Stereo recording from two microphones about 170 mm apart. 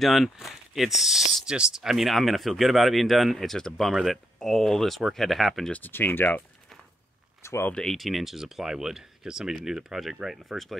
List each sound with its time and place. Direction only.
0.0 s speech: centre (ahead or behind)
7.7 s speech: centre (ahead or behind)